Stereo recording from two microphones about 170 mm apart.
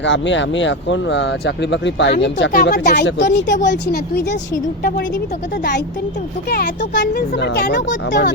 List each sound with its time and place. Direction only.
0.0 s speech: 90° left
2.2 s speech: 75° left (ahead or behind); by 3.6 s 90° left
3.7 s speech: 75° left (ahead or behind)
4.8 s a woman's voice: 60° left (ahead or behind)
7.1 s speech: 75° left (ahead or behind); by 8.3 s 90° left